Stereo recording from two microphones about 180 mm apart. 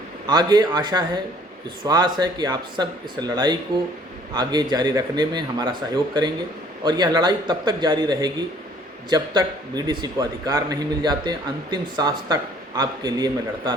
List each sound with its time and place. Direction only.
0.3 s a man's voice: 20° right (ahead or behind)
6.8 s a man's voice: 25° right (ahead or behind)